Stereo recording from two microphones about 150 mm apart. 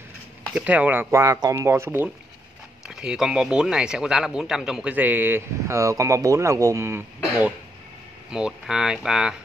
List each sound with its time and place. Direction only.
0.6 s speech: 10° right (ahead or behind)
2.9 s speech: 5° right (ahead or behind)